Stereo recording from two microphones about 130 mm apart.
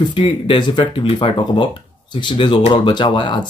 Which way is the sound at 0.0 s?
40° left (ahead or behind).